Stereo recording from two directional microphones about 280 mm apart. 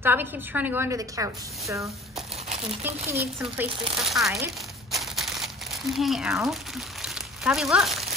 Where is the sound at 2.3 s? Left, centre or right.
Right.